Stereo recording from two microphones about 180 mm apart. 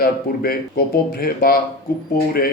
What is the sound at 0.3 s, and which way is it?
Speech, 55° left (ahead or behind).